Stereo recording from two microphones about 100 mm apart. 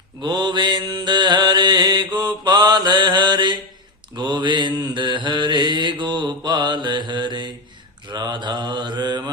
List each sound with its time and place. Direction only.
0.2 s mantra: 50° right (ahead or behind)